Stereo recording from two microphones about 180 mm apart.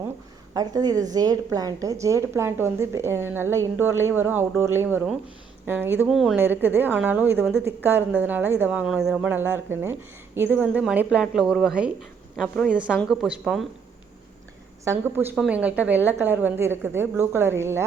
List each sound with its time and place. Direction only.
0.5 s a woman's voice: 20° right (ahead or behind); by 13.7 s centre (ahead or behind)
14.8 s a woman's voice: 10° right (ahead or behind)